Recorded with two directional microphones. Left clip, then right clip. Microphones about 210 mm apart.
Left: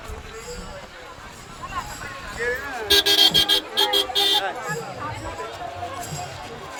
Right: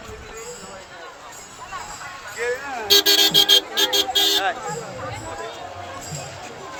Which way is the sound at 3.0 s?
45° right (ahead or behind).